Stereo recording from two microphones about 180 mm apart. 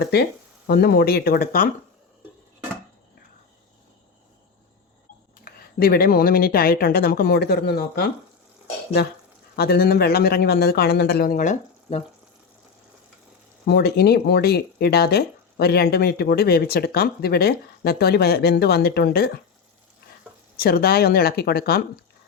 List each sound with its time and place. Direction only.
0.0 s speech: 60° left (ahead or behind)
5.5 s speech: 55° left (ahead or behind); by 12.0 s 40° left (ahead or behind)
13.7 s speech: 60° left (ahead or behind)
20.6 s speech: 60° left (ahead or behind)